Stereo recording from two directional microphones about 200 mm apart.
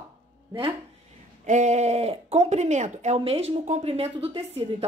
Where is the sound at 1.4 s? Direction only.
35° right (ahead or behind).